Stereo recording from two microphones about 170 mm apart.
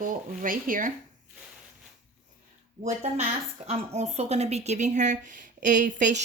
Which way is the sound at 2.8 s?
40° right (ahead or behind).